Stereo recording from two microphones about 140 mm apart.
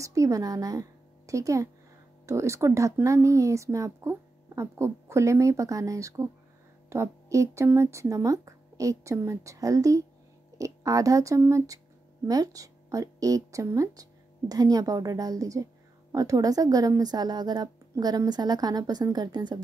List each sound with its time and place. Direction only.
0.0 s a woman's voice: 25° right (ahead or behind)